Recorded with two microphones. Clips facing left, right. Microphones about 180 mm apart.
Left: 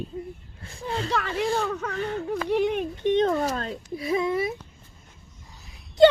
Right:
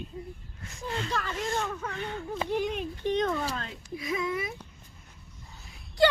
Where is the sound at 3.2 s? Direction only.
40° left (ahead or behind).